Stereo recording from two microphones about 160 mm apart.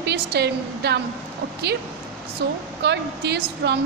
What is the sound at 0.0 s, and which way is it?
Speech, 90° right.